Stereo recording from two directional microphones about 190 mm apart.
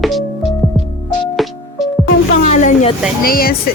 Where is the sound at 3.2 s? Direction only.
50° left (ahead or behind).